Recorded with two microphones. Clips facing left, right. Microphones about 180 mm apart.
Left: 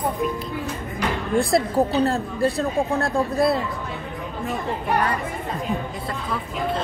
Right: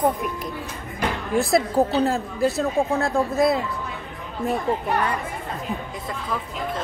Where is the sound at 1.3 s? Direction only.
Centre (ahead or behind).